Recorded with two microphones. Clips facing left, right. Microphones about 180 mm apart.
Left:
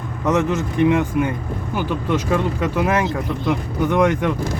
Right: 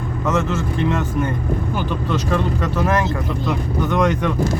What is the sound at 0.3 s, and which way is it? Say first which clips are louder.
Speech: left 2 dB; 15° left (ahead or behind).